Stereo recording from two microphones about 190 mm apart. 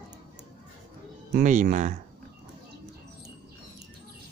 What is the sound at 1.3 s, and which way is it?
Speech, 45° right (ahead or behind).